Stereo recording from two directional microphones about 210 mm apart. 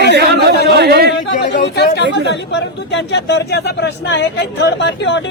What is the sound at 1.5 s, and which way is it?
Speech, 55° left (ahead or behind).